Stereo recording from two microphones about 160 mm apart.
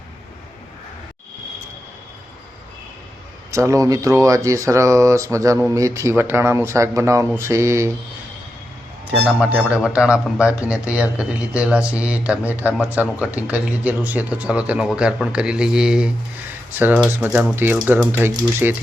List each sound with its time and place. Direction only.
3.5 s speech: 20° right (ahead or behind)
9.0 s speech: 5° right (ahead or behind)